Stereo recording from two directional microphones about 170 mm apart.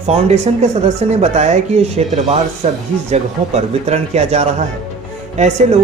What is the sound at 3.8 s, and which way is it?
A woman's voice, 40° right (ahead or behind).